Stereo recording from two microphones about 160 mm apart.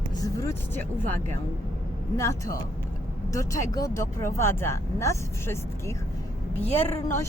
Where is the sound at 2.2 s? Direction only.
20° left (ahead or behind).